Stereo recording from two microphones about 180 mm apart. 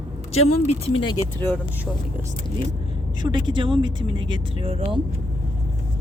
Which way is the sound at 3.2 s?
25° right (ahead or behind).